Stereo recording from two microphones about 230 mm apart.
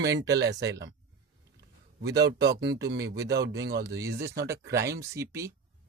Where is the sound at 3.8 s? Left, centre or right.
Centre.